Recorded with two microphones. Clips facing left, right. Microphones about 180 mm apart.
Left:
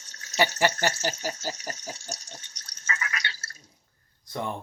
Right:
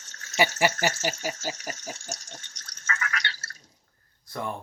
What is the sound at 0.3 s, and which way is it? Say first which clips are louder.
Speech: even; 10° right (ahead or behind).